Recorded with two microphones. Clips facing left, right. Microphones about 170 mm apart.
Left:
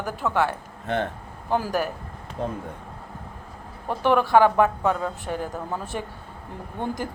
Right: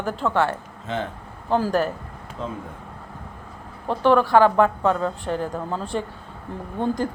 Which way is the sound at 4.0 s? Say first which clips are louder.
Right 2 dB; 15° left (ahead or behind).